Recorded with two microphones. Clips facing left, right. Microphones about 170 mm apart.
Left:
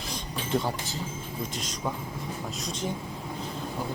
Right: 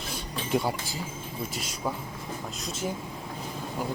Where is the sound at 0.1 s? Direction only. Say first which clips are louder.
Right 1 dB; 10° right (ahead or behind).